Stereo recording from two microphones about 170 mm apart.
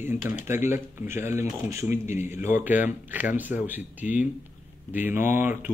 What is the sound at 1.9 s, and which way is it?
Speech, 45° left (ahead or behind).